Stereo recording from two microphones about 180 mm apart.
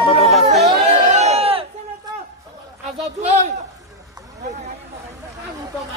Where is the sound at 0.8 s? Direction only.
35° right (ahead or behind).